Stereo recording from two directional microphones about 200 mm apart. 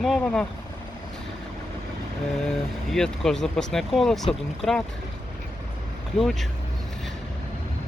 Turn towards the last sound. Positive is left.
turn(degrees=0)  # may be behind; listen again after turning